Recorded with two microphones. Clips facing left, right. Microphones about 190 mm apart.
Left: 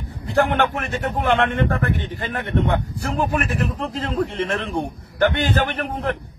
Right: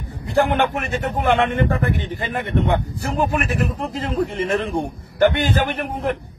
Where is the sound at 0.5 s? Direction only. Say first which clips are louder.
Right 1 dB; 15° right (ahead or behind).